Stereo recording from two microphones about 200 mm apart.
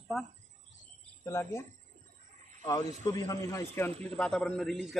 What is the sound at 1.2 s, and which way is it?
Speech, 15° left (ahead or behind).